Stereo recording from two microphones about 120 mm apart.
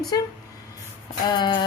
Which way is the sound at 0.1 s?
30° left (ahead or behind).